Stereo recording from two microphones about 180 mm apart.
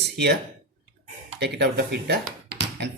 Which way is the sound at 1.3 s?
70° right (ahead or behind).